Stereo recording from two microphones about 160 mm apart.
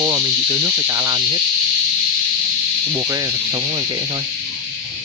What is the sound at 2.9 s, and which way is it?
Speech, 25° right (ahead or behind).